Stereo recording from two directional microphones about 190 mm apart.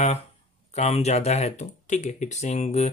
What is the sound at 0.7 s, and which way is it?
Speech, 35° left (ahead or behind).